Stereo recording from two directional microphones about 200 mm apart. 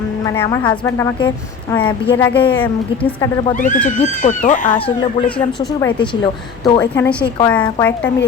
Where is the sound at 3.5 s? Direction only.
40° left (ahead or behind).